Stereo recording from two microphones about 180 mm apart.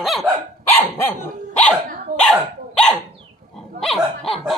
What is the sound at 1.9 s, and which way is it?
Dog, 45° right (ahead or behind).